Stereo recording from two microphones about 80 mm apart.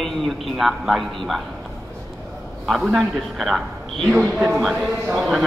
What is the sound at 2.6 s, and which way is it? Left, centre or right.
A man's voice, centre.